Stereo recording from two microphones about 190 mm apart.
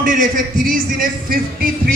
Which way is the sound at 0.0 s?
45° right (ahead or behind).